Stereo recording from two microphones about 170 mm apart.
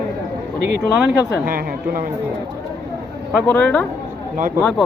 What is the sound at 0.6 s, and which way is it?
Speech, 90° right.